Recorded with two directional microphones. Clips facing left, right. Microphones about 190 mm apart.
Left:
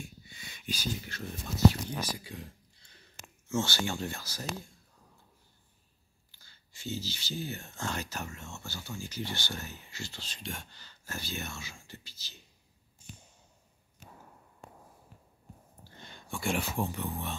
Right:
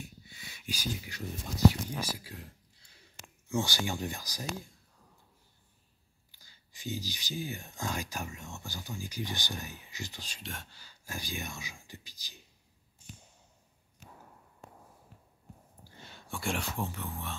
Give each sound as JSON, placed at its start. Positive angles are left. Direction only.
{"t": 0.0, "sound": "a sound", "side_deg": -5}
{"t": 1.7, "sound": "speech", "side_deg": -10}
{"t": 6.3, "sound": "speech", "side_deg": -15}
{"t": 10.4, "sound": "speech", "side_deg": 0}
{"t": 15.8, "sound": "a sound", "side_deg": -5}
{"t": 16.8, "sound": "speech", "side_deg": 15}